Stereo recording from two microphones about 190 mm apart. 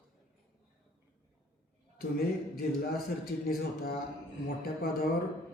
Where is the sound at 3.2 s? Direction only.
50° left (ahead or behind).